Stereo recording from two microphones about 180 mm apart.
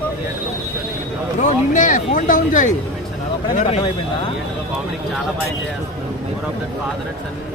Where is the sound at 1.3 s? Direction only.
45° left (ahead or behind).